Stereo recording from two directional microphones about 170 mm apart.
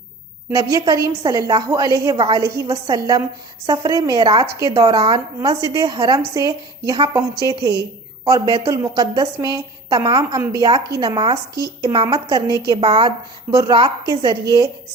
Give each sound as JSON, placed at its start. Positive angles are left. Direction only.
{"t": 0.5, "sound": "a woman's voice", "side_deg": -20}